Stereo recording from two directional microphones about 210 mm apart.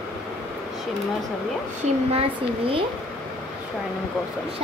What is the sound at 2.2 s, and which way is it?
Speech, 25° right (ahead or behind).